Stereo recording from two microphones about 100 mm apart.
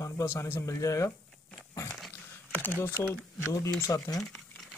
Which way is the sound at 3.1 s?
25° left (ahead or behind).